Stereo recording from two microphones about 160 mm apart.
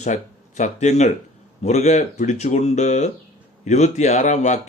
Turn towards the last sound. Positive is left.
turn(degrees=45)  # may be behind; listen again after turning